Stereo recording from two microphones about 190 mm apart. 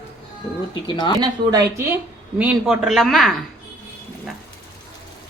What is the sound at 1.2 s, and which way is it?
Speech, 20° right (ahead or behind).